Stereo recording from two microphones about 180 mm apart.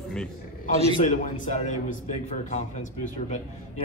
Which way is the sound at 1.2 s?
45° left (ahead or behind).